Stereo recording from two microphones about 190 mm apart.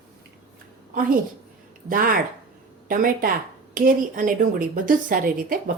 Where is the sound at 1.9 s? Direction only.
45° right (ahead or behind).